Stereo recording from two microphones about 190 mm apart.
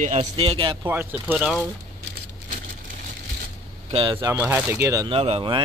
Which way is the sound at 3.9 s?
25° right (ahead or behind).